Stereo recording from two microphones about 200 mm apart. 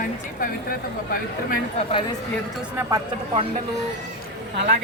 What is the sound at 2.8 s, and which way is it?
Speech, 15° right (ahead or behind).